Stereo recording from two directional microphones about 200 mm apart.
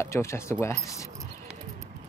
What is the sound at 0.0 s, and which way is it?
Speech, 15° left (ahead or behind).